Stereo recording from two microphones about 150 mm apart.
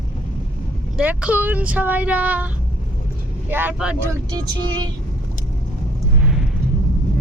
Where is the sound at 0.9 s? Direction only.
10° right (ahead or behind).